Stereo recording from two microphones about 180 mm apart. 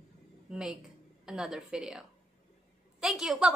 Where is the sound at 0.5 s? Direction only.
5° right (ahead or behind).